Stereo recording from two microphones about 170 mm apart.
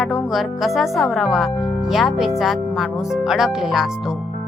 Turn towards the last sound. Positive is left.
turn(degrees=-5)  # may be behind; listen again after turning